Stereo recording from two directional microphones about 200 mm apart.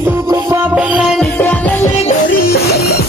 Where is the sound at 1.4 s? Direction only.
10° left (ahead or behind).